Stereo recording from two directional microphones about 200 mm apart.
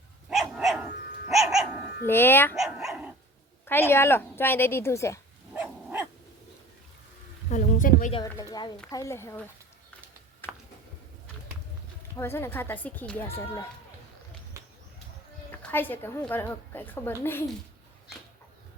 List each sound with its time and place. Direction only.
0.3 s dog: centre (ahead or behind)
2.0 s a woman's voice: 10° left (ahead or behind)
2.6 s dog: centre (ahead or behind)
3.7 s a woman's voice: 10° left (ahead or behind)
5.5 s dog: 10° right (ahead or behind)
7.5 s speech: 40° left (ahead or behind)
8.1 s a woman's voice: 20° left (ahead or behind)
12.1 s a woman's voice: 10° left (ahead or behind)
15.5 s a woman's voice: 10° left (ahead or behind)